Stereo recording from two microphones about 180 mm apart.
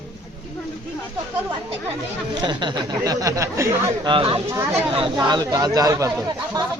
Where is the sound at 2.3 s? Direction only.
25° right (ahead or behind).